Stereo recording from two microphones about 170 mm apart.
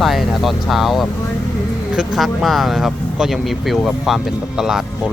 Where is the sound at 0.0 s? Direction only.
Centre (ahead or behind).